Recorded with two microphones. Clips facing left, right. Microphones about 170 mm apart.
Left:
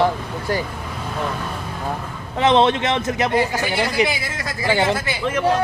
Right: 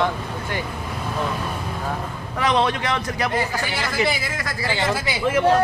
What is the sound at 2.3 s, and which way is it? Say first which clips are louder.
A man's voice: left 5 dB; 25° left (ahead or behind).